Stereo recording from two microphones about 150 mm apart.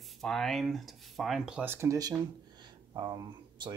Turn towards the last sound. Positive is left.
turn(degrees=-30)  # may be behind; listen again after turning